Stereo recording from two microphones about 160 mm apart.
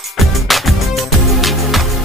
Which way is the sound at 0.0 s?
Centre (ahead or behind).